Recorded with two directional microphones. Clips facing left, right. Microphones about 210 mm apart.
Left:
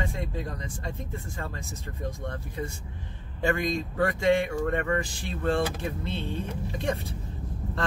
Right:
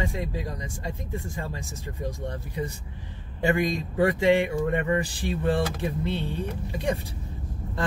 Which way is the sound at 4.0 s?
15° right (ahead or behind).